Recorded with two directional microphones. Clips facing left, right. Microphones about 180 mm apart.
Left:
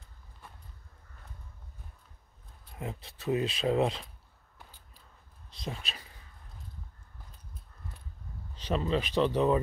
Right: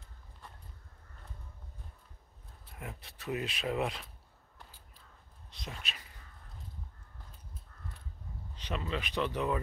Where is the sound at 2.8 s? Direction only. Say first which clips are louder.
Left 7 dB; 25° left (ahead or behind).